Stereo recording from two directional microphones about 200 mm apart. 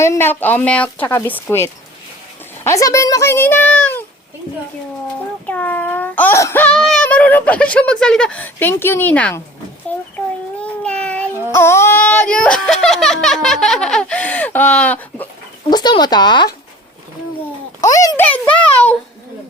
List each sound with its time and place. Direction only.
0.0 s speech: 10° left (ahead or behind)
5.5 s speech: 10° left (ahead or behind)
10.6 s child singing: 5° left (ahead or behind)
15.7 s speech: 20° left (ahead or behind)
17.8 s speech: 15° left (ahead or behind)